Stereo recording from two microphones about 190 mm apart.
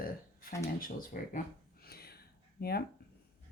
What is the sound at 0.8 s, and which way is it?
Speech, 45° left (ahead or behind).